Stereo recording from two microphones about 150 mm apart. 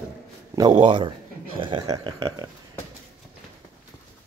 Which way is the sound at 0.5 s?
25° right (ahead or behind).